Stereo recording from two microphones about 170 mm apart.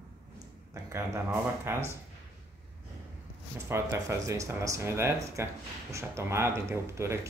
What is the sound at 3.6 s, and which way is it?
Speech, 15° right (ahead or behind).